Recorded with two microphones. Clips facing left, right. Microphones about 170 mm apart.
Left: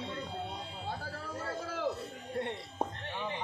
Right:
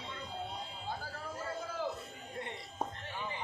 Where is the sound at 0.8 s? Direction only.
65° left (ahead or behind).